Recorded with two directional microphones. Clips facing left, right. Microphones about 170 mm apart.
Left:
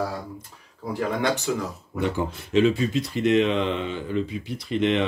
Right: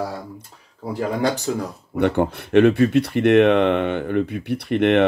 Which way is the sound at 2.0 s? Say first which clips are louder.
Right 7 dB; 65° right (ahead or behind).